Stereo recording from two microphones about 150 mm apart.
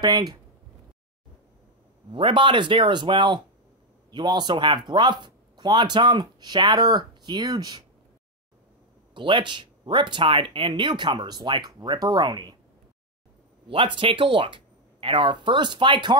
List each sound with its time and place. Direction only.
0.0 s speech: 25° right (ahead or behind)
2.1 s speech: 35° right (ahead or behind)
9.1 s speech: 30° right (ahead or behind)
13.7 s speech: 35° right (ahead or behind)